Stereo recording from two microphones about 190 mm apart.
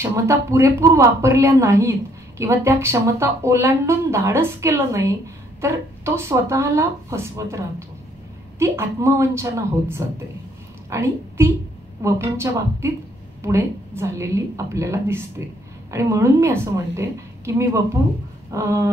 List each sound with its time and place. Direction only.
0.0 s a woman's voice: 15° right (ahead or behind)